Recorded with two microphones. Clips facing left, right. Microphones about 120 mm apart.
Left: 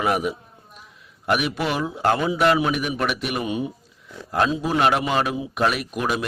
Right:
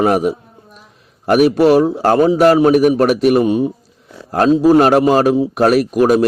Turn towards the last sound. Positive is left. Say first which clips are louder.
# right 13 dB
turn(degrees=-45)  # may be behind; listen again after turning